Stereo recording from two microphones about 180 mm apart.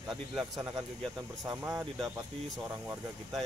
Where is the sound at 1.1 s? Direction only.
15° right (ahead or behind).